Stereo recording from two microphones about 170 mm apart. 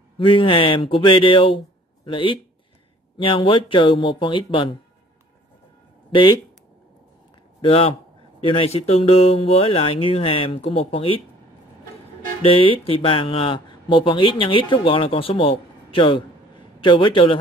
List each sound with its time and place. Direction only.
0.2 s speech: 30° left (ahead or behind)
7.6 s speech: 35° left (ahead or behind)
12.4 s speech: 35° left (ahead or behind)